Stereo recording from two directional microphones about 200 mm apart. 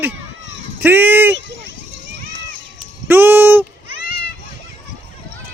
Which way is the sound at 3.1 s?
10° right (ahead or behind).